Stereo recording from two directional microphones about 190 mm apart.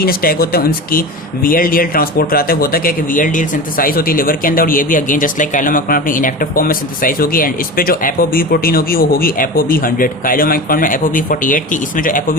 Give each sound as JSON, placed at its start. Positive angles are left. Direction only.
{"t": 0.0, "sound": "speech", "side_deg": 50}